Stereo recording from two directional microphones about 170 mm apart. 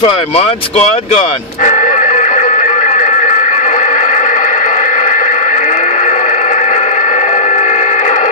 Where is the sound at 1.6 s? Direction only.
45° left (ahead or behind).